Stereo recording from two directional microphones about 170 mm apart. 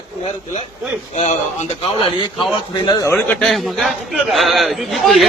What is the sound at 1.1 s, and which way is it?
Speech, 40° left (ahead or behind).